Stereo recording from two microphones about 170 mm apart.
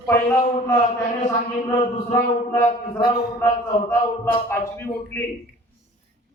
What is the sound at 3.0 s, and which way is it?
Speech, 70° left (ahead or behind).